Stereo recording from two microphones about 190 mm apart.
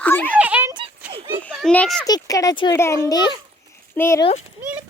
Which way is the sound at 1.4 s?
Centre (ahead or behind).